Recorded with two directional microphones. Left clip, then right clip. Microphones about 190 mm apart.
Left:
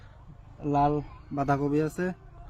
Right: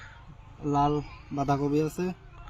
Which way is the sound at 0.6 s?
5° left (ahead or behind).